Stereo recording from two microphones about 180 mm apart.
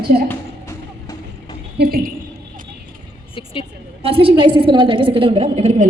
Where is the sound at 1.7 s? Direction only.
60° right (ahead or behind).